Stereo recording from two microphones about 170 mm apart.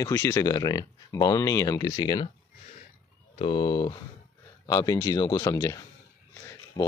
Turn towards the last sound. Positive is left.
turn(degrees=25)  # may be behind; listen again after turning